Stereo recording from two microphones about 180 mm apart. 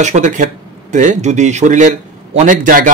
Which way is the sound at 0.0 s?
40° right (ahead or behind).